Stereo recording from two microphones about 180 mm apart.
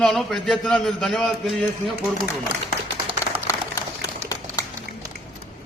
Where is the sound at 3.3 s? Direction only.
30° right (ahead or behind).